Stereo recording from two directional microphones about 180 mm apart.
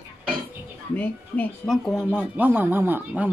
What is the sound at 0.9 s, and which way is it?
Speech, 10° left (ahead or behind).